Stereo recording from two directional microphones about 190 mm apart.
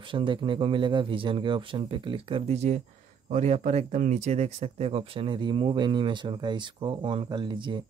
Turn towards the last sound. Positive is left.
turn(degrees=-25)  # may be behind; listen again after turning